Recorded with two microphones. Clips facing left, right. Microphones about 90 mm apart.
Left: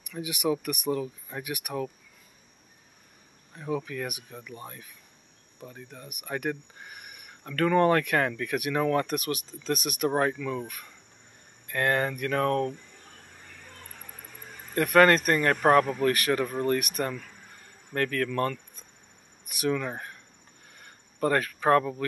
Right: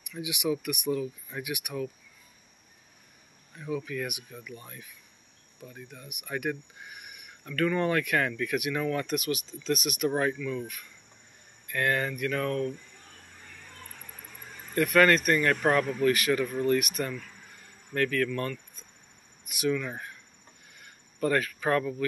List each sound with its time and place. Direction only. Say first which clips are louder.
0.1 s speech: left 2 dB; 45° left (ahead or behind)
3.5 s speech: left 1 dB; 35° left (ahead or behind)
14.8 s speech: left 2 dB; 35° left (ahead or behind)
19.6 s speech: left 1 dB; 40° left (ahead or behind)